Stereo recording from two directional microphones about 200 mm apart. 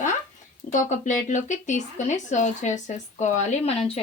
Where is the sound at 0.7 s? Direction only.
40° left (ahead or behind).